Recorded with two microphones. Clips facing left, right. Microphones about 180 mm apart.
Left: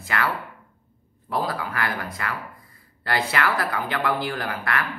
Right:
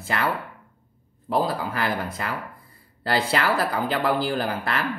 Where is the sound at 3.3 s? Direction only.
30° right (ahead or behind).